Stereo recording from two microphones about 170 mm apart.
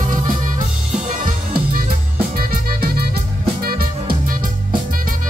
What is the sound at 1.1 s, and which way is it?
Music, 55° right (ahead or behind).